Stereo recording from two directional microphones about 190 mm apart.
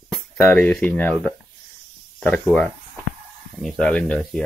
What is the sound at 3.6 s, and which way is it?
Speech, 5° left (ahead or behind).